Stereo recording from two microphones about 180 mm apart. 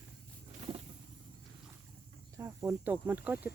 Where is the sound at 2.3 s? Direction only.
15° right (ahead or behind).